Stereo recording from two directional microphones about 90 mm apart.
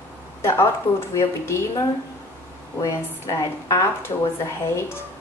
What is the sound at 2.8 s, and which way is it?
A woman's voice, 45° left (ahead or behind).